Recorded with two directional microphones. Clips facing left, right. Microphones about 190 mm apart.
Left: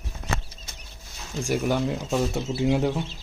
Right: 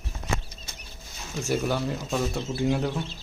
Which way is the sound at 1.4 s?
15° left (ahead or behind).